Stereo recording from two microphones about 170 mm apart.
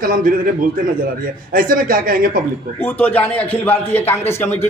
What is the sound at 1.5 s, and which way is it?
Speech, 55° right (ahead or behind).